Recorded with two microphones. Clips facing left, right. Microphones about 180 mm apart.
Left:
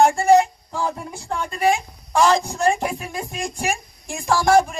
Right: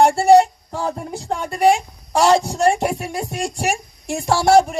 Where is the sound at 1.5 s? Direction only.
75° right (ahead or behind).